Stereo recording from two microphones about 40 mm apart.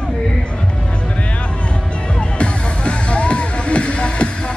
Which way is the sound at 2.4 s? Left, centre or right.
Left.